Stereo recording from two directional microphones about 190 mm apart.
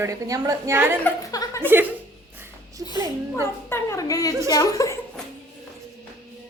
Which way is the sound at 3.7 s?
15° left (ahead or behind).